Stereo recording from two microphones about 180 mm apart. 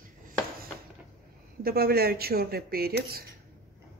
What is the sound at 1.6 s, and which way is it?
Speech, 55° right (ahead or behind).